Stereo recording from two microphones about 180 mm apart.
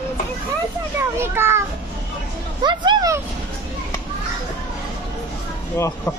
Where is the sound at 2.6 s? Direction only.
25° right (ahead or behind).